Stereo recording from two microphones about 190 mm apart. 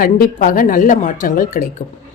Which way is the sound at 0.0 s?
50° left (ahead or behind).